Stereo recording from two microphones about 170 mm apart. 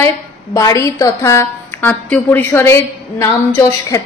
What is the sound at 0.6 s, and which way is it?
A woman's voice, 20° left (ahead or behind).